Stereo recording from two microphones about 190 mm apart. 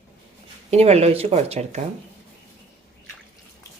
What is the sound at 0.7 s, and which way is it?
Speech, 35° right (ahead or behind).